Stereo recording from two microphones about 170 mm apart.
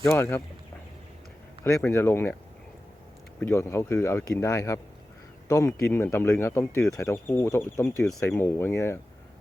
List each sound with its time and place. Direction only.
0.0 s speech: 15° left (ahead or behind)
1.6 s speech: 15° left (ahead or behind)
3.4 s speech: 15° left (ahead or behind)